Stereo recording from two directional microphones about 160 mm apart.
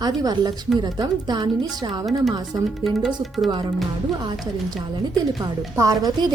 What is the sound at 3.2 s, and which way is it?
Speech, centre (ahead or behind).